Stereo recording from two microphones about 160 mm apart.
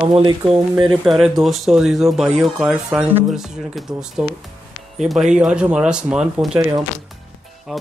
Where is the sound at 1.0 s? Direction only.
Centre (ahead or behind).